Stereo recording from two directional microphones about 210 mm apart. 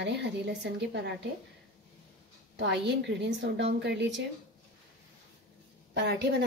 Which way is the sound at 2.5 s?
55° right (ahead or behind).